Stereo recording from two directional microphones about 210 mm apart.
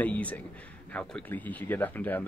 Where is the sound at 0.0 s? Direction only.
5° left (ahead or behind).